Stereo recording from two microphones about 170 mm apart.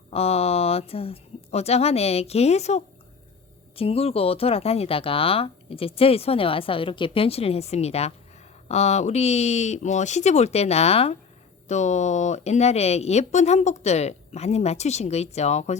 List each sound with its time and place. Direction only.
0.1 s speech: 35° left (ahead or behind)